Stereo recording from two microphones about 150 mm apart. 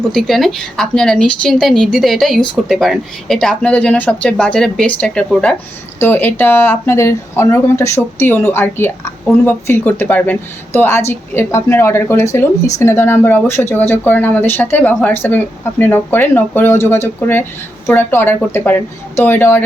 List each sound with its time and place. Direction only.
0.0 s speech: centre (ahead or behind)